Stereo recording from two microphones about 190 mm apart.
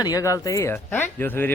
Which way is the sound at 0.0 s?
20° left (ahead or behind).